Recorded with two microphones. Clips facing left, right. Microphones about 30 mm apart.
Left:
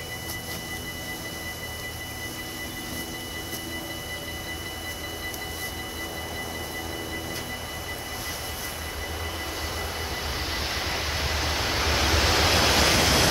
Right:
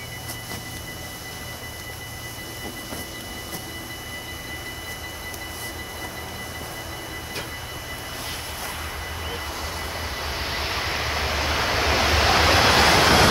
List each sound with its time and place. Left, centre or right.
10.1 s vehicle: centre; by 13.3 s right